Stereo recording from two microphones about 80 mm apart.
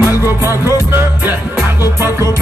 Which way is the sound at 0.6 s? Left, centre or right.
Right.